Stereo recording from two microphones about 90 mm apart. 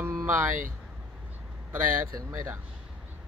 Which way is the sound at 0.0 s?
35° right (ahead or behind).